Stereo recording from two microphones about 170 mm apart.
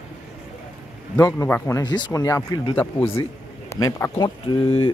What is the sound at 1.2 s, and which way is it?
Speech, 15° left (ahead or behind).